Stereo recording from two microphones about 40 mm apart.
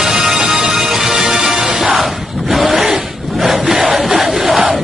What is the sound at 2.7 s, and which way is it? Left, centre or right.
Zipper, centre.